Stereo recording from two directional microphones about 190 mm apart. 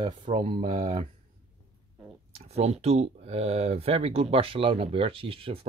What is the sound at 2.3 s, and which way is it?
Speech, 35° right (ahead or behind).